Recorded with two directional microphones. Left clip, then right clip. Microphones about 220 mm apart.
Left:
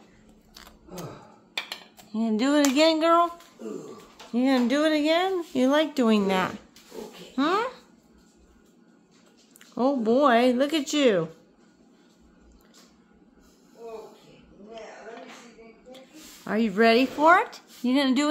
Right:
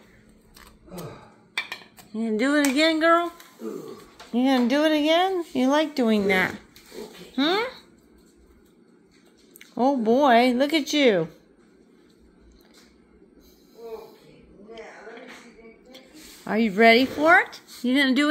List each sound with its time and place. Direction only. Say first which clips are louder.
2.1 s a sound: right 1 dB; 10° left (ahead or behind)
4.3 s speech: right 2 dB; centre (ahead or behind)
9.6 s speech: right 2 dB; centre (ahead or behind)
16.4 s speech: right 4 dB; centre (ahead or behind)